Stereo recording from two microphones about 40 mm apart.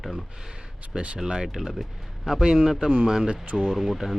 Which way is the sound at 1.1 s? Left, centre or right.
Centre.